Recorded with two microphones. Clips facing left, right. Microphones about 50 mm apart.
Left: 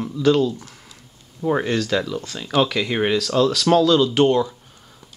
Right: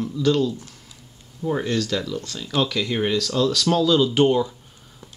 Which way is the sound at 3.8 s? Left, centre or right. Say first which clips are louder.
Left 2 dB; centre.